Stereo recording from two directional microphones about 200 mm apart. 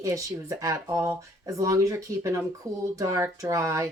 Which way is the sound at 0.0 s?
15° right (ahead or behind).